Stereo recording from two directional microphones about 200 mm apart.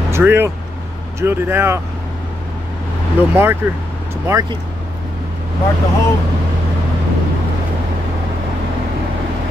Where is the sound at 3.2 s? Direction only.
10° right (ahead or behind).